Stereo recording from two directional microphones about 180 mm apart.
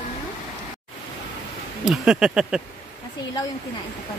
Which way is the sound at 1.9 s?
5° right (ahead or behind).